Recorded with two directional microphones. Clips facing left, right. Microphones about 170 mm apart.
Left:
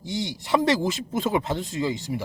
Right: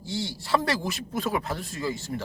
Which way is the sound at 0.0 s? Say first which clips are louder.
Left 2 dB; 15° left (ahead or behind).